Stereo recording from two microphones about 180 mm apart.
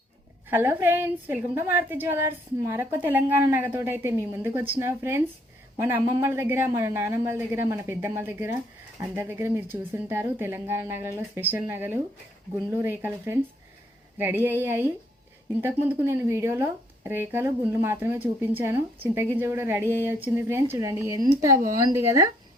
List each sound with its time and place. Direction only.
0.5 s a woman's voice: 10° right (ahead or behind)